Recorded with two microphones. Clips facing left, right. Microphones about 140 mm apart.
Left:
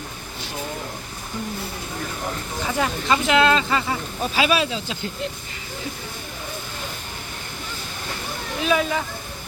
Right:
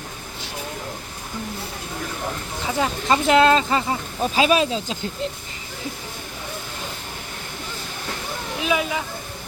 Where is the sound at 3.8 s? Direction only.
25° right (ahead or behind).